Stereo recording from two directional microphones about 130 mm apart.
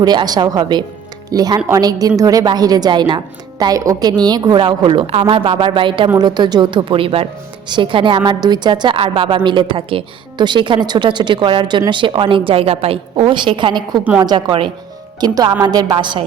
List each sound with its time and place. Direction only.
0.0 s a woman's voice: 30° right (ahead or behind)